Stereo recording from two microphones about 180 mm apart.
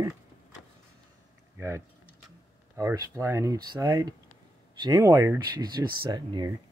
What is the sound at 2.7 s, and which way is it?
Speech, 15° right (ahead or behind).